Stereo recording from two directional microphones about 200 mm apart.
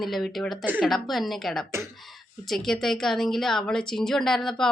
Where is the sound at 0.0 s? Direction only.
Centre (ahead or behind).